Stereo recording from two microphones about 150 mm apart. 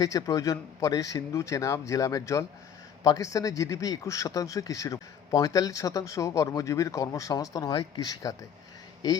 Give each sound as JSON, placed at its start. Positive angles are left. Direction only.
{"t": 0.0, "sound": "speech", "side_deg": 25}